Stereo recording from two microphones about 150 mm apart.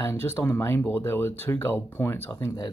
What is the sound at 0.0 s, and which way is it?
Speech, 15° left (ahead or behind).